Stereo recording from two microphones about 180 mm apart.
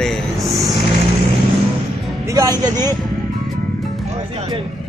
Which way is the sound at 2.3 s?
20° right (ahead or behind).